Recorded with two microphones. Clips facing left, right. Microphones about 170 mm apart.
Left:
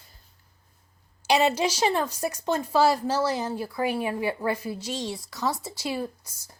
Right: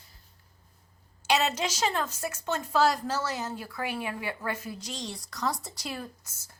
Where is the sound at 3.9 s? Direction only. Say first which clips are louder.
Left 5 dB; 35° left (ahead or behind).